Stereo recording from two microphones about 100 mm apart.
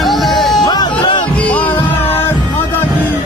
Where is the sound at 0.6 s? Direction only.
45° left (ahead or behind).